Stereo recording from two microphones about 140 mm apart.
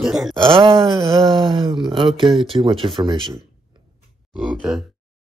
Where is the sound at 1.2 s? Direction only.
35° right (ahead or behind).